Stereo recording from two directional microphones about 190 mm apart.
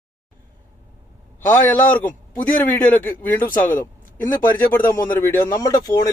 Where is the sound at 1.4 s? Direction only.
10° left (ahead or behind).